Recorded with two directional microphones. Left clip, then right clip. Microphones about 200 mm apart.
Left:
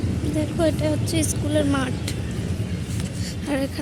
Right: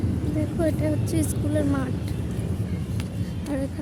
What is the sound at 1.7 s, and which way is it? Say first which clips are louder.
Speech: left 4 dB; 5° left (ahead or behind).